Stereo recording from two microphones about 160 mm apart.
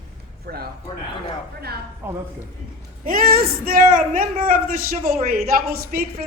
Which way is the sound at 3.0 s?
65° right (ahead or behind).